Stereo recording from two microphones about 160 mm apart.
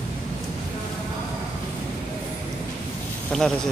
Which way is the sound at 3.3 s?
5° left (ahead or behind).